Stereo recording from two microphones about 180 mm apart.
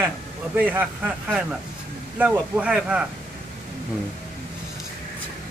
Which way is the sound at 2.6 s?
5° right (ahead or behind).